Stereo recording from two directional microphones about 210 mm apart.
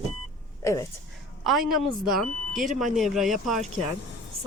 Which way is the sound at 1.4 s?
Centre (ahead or behind).